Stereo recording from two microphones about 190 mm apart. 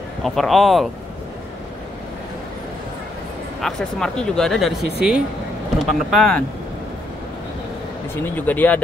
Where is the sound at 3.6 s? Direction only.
5° left (ahead or behind).